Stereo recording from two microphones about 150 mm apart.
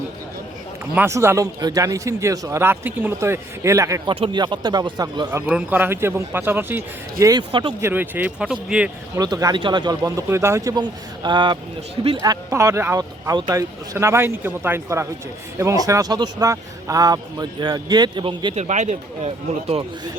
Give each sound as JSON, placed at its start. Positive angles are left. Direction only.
{"t": 0.9, "sound": "a man's voice", "side_deg": -15}
{"t": 4.1, "sound": "a man's voice", "side_deg": -35}
{"t": 5.5, "sound": "speech", "side_deg": -10}
{"t": 9.1, "sound": "a man's voice", "side_deg": -25}
{"t": 18.5, "sound": "speech", "side_deg": -50}